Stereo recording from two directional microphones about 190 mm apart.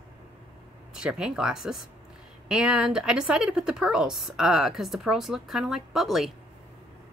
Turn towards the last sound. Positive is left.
turn(degrees=0)  # may be behind; listen again after turning